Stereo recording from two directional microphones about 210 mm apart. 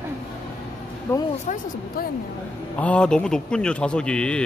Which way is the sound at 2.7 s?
5° left (ahead or behind).